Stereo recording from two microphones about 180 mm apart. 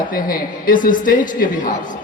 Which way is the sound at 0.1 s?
50° left (ahead or behind).